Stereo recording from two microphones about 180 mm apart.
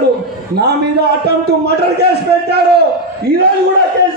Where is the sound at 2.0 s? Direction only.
65° right (ahead or behind).